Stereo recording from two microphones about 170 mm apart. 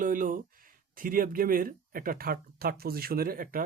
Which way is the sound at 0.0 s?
50° right (ahead or behind).